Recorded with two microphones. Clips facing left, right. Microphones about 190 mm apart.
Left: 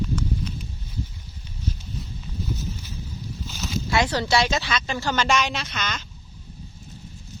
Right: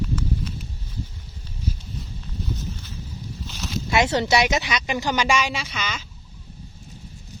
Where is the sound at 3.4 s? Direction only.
Centre (ahead or behind).